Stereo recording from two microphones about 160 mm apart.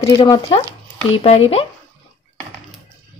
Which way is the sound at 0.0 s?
25° left (ahead or behind).